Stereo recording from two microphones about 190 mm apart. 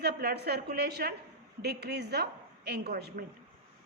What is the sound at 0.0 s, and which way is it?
A woman's voice, 60° right (ahead or behind).